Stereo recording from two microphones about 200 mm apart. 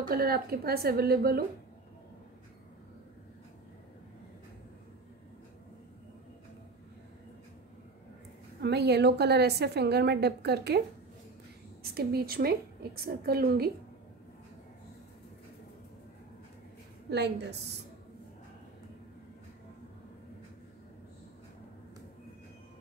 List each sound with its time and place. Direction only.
0.1 s a woman's voice: 50° right (ahead or behind)
8.6 s a woman's voice: 55° right (ahead or behind)
11.8 s a woman's voice: 50° right (ahead or behind)
17.1 s a woman's voice: 55° right (ahead or behind)